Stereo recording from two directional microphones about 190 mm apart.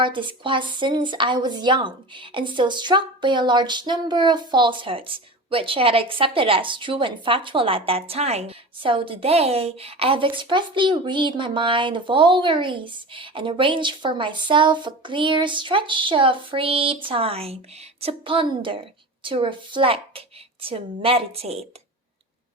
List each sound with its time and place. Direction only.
0.0 s speech: 25° right (ahead or behind)